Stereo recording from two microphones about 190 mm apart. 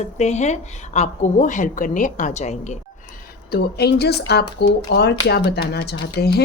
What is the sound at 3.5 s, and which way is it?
Speech, 55° left (ahead or behind).